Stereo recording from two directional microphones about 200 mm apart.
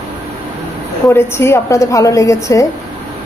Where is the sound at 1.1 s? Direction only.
10° left (ahead or behind).